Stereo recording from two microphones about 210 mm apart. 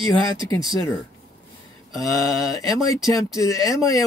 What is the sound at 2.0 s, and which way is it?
Speech, 15° left (ahead or behind).